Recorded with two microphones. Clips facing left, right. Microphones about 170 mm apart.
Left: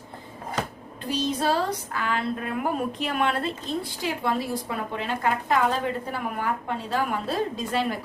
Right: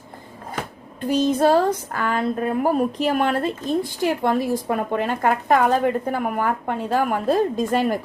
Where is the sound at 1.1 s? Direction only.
50° right (ahead or behind).